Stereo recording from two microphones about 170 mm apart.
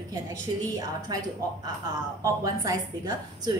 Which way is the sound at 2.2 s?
20° right (ahead or behind).